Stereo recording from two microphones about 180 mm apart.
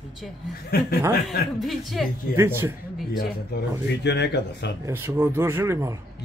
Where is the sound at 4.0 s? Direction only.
70° left (ahead or behind).